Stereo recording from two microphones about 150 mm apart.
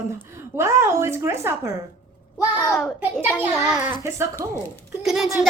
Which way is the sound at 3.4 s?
10° right (ahead or behind).